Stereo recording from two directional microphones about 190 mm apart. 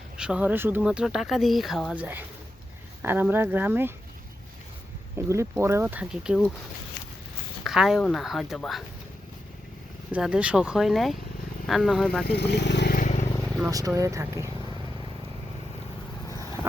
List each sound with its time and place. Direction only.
0.2 s speech: 5° right (ahead or behind)
5.1 s speech: 15° right (ahead or behind)
7.6 s speech: centre (ahead or behind)
10.1 s speech: 5° right (ahead or behind)
12.2 s speech: 60° left (ahead or behind)
13.0 s vehicle: 35° left (ahead or behind)
13.4 s vehicle: centre (ahead or behind)
13.7 s speech: 20° right (ahead or behind)